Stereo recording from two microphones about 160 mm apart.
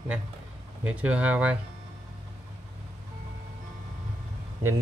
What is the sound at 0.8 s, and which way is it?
Speech, 10° right (ahead or behind).